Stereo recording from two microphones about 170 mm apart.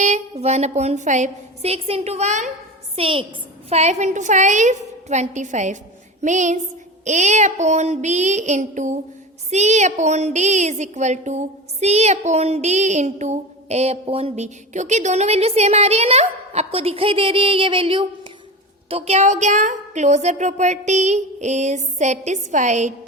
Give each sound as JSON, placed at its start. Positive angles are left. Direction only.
{"t": 0.0, "sound": "a woman's voice", "side_deg": -40}